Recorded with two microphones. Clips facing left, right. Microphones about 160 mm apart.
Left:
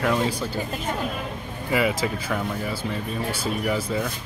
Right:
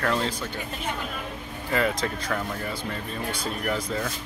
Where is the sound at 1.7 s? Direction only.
5° left (ahead or behind).